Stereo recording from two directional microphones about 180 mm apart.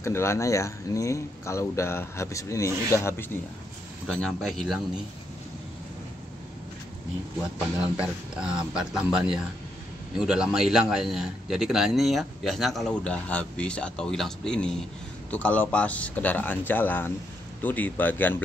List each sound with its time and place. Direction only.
0.0 s speech: 15° left (ahead or behind)
4.1 s a man's voice: 5° left (ahead or behind)
7.8 s a man's voice: 5° right (ahead or behind)